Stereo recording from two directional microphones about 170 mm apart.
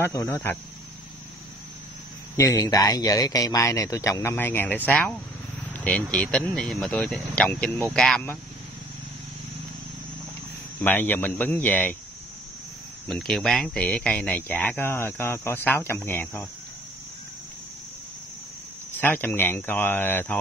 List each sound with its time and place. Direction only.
0.0 s speech: 15° left (ahead or behind)
2.3 s a man's voice: 20° left (ahead or behind)
10.8 s speech: 10° left (ahead or behind)
13.1 s speech: centre (ahead or behind)
18.9 s speech: 10° left (ahead or behind)